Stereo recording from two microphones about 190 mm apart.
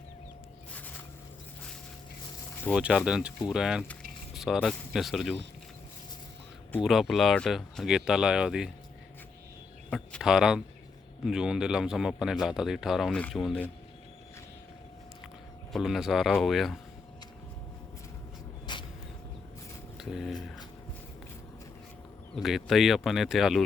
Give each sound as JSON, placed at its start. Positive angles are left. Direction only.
{"t": 2.7, "sound": "speech", "side_deg": -5}
{"t": 6.7, "sound": "speech", "side_deg": 0}
{"t": 9.9, "sound": "speech", "side_deg": 5}
{"t": 15.7, "sound": "speech", "side_deg": 0}
{"t": 18.6, "sound": "vehicle", "side_deg": 25}
{"t": 20.0, "sound": "speech", "side_deg": 0}
{"t": 22.4, "sound": "speech", "side_deg": 0}